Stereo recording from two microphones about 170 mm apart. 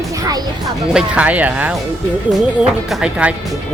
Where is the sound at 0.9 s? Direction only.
5° right (ahead or behind).